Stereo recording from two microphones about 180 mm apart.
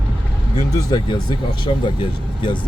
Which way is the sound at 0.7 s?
25° left (ahead or behind).